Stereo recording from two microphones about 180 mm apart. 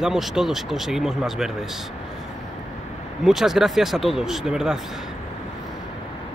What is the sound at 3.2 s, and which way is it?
Speech, centre (ahead or behind).